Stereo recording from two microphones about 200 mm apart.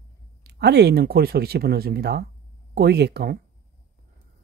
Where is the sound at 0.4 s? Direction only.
55° right (ahead or behind).